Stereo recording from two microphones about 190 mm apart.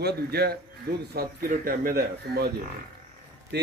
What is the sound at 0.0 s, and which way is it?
A man's voice, 55° right (ahead or behind).